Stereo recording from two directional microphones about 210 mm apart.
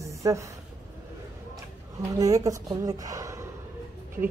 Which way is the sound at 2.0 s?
15° right (ahead or behind).